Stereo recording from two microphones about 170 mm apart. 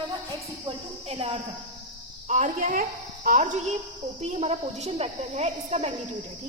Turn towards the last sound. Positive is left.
turn(degrees=-40)  # may be behind; listen again after turning